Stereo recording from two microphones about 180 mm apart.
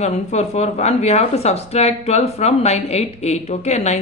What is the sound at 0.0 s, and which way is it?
Speech, 40° left (ahead or behind).